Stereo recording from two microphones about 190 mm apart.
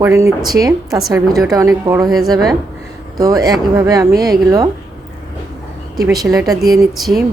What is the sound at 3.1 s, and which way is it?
Speech, 20° right (ahead or behind).